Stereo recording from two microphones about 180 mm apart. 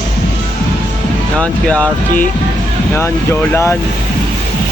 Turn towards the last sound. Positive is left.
turn(degrees=15)  # may be behind; listen again after turning